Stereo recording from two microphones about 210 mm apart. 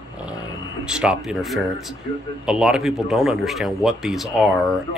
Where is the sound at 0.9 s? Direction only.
5° right (ahead or behind).